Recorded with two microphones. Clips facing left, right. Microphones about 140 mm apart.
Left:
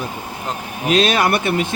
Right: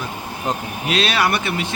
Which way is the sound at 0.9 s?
45° left (ahead or behind).